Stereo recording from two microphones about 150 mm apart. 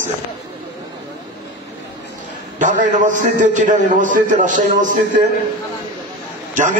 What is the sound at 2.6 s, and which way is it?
A man's voice, 60° right (ahead or behind).